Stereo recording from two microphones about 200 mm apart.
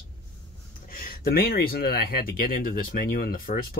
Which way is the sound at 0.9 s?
50° left (ahead or behind).